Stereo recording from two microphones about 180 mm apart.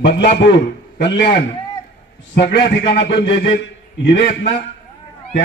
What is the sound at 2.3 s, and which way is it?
Speech, 70° left (ahead or behind).